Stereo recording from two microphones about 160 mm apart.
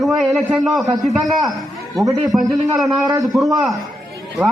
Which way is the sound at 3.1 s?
25° right (ahead or behind).